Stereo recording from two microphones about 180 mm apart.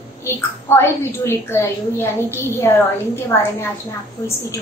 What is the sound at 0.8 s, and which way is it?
A woman's voice, 15° left (ahead or behind).